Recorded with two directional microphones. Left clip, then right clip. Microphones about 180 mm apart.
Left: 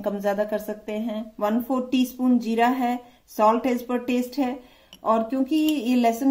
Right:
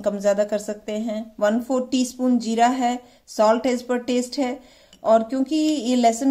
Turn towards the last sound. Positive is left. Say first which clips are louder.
# right 3 dB
turn(degrees=-35)  # may be behind; listen again after turning